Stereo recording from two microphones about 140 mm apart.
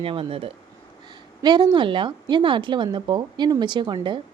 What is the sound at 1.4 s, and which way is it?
Speech, 30° right (ahead or behind).